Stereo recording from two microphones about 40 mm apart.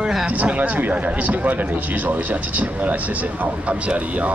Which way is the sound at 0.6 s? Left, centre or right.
Right.